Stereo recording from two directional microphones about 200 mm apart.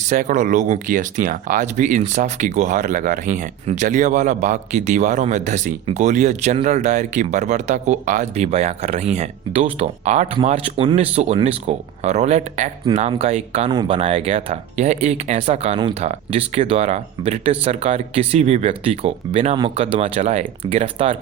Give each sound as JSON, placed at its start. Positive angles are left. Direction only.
{"t": 0.1, "sound": "speech", "side_deg": -40}